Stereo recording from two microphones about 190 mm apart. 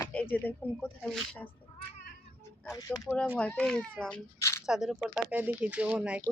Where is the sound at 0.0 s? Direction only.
10° left (ahead or behind).